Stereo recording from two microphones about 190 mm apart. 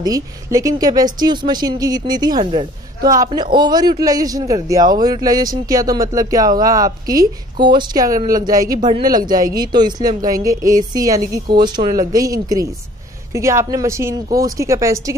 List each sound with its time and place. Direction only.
0.0 s a man's voice: 20° right (ahead or behind)